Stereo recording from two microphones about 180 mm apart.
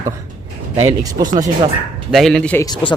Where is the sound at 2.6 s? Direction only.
25° left (ahead or behind).